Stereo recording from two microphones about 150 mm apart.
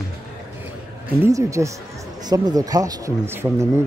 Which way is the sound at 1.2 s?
20° right (ahead or behind).